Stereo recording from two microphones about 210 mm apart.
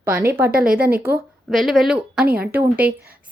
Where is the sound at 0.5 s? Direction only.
45° right (ahead or behind).